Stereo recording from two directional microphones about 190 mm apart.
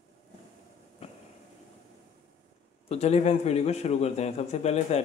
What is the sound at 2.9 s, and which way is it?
Speech, 35° left (ahead or behind).